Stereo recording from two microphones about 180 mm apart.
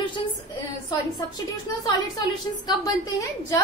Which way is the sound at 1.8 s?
25° left (ahead or behind).